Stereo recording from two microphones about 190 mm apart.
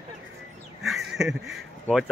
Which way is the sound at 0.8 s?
Centre (ahead or behind).